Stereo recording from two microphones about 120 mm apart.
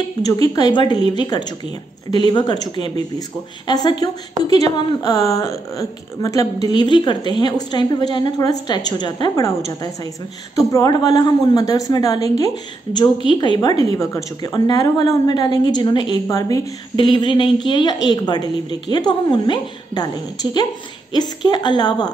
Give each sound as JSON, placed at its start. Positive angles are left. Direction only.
{"t": 0.2, "sound": "a woman's voice", "side_deg": 35}
{"t": 3.6, "sound": "a woman's voice", "side_deg": 35}
{"t": 16.3, "sound": "a woman's voice", "side_deg": 30}
{"t": 16.9, "sound": "a woman's voice", "side_deg": 40}
{"t": 21.1, "sound": "a woman's voice", "side_deg": 35}